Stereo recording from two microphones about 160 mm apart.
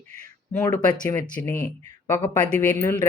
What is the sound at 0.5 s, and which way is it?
Speech, 20° left (ahead or behind).